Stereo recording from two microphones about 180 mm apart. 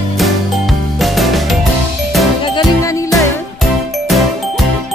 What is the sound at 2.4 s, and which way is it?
Music, 20° left (ahead or behind).